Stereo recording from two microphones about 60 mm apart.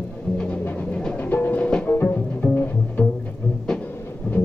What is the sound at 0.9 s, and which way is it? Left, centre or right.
Music, centre.